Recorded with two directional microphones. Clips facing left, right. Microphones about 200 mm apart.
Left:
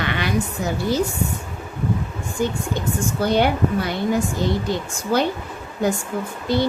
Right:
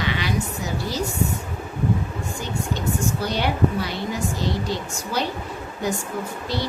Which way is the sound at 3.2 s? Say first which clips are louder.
Left 6 dB; 55° left (ahead or behind).